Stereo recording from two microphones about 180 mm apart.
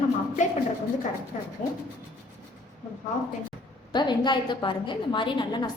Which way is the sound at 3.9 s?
25° left (ahead or behind).